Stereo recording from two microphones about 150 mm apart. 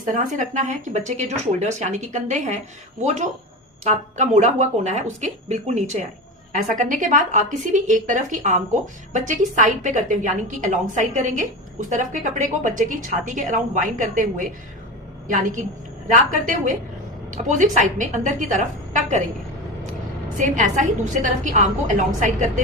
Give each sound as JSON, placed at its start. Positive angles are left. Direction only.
{"t": 0.1, "sound": "speech", "side_deg": -60}
{"t": 3.8, "sound": "speech", "side_deg": -50}
{"t": 6.5, "sound": "a woman's voice", "side_deg": -60}
{"t": 17.3, "sound": "a woman's voice", "side_deg": -55}
{"t": 20.4, "sound": "a woman's voice", "side_deg": -60}